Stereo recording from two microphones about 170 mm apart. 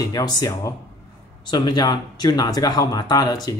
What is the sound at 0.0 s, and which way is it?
Speech, 20° left (ahead or behind).